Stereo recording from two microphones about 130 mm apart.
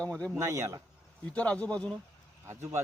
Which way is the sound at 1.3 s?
10° left (ahead or behind).